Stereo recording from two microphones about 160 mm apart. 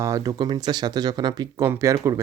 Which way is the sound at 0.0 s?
20° right (ahead or behind).